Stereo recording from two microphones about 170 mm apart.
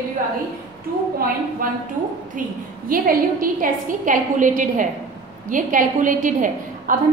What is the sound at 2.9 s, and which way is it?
A woman's voice, 55° right (ahead or behind).